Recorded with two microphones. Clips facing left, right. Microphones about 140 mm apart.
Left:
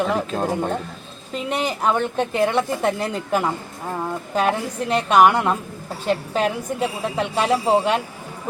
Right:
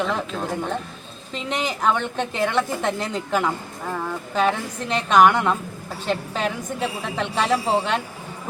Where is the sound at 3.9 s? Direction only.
20° left (ahead or behind).